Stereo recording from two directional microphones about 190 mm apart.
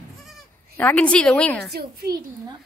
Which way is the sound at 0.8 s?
10° left (ahead or behind).